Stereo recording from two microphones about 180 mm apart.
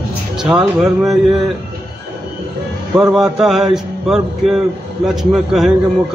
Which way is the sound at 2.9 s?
5° right (ahead or behind).